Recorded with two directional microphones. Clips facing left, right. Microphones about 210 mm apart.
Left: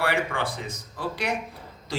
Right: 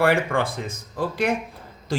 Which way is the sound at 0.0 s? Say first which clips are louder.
Right 6 dB; 50° right (ahead or behind).